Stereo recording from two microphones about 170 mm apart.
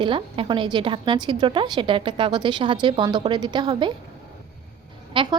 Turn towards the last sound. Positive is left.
turn(degrees=-30)  # may be behind; listen again after turning